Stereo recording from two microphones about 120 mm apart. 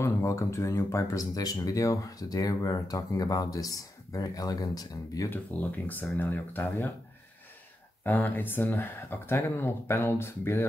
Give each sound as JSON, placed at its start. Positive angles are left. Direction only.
{"t": 0.0, "sound": "speech", "side_deg": 25}
{"t": 5.3, "sound": "speech", "side_deg": 15}
{"t": 8.0, "sound": "speech", "side_deg": 15}